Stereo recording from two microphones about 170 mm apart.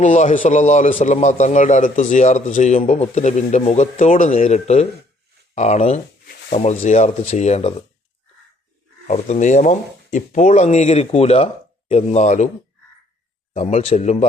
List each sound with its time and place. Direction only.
0.0 s a man's voice: 45° left (ahead or behind)
9.0 s speech: 40° left (ahead or behind)
13.5 s speech: 40° left (ahead or behind)